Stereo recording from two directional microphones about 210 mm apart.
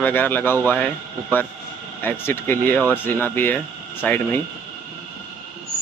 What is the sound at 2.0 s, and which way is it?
Speech, 10° left (ahead or behind).